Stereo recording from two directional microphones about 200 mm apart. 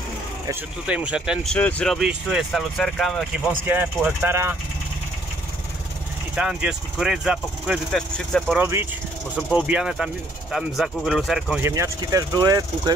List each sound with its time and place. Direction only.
0.5 s speech: 10° right (ahead or behind)
3.6 s speech: 10° right (ahead or behind)
6.3 s speech: 5° right (ahead or behind)
8.5 s speech: 10° right (ahead or behind)
11.6 s speech: 15° right (ahead or behind)